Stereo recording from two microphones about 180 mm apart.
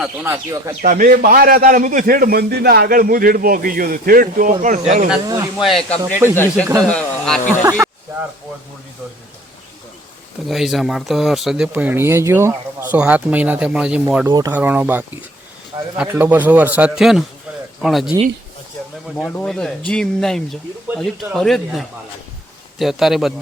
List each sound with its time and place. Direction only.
0.0 s a man's voice: 10° right (ahead or behind)
0.8 s a man's voice: 50° right (ahead or behind)
5.2 s speech: 20° right (ahead or behind)
5.5 s speech: centre (ahead or behind)
6.0 s a man's voice: 15° right (ahead or behind)
6.3 s speech: 10° left (ahead or behind)
7.6 s a man's voice: 15° right (ahead or behind)
10.4 s a man's voice: centre (ahead or behind)
19.1 s speech: 10° left (ahead or behind)